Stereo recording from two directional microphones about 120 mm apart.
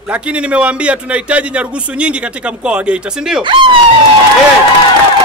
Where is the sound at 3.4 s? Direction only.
45° right (ahead or behind).